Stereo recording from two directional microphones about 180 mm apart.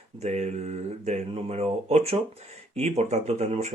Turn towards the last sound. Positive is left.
turn(degrees=-40)  # may be behind; listen again after turning